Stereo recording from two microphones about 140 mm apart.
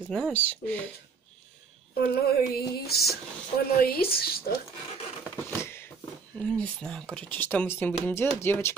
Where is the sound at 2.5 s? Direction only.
90° left.